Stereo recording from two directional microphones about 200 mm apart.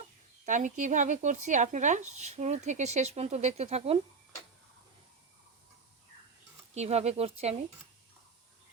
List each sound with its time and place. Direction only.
0.4 s speech: 40° right (ahead or behind)
6.7 s speech: 35° right (ahead or behind)